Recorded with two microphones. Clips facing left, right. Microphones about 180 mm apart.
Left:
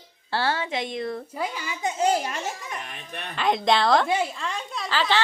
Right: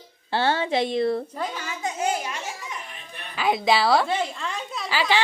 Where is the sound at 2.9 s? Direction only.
70° left (ahead or behind).